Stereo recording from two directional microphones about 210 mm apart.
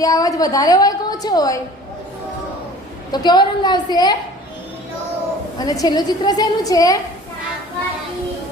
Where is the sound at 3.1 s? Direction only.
20° left (ahead or behind).